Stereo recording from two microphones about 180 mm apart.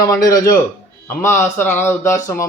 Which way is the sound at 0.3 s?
20° left (ahead or behind).